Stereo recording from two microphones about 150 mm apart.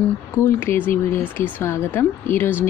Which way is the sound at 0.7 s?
60° left (ahead or behind).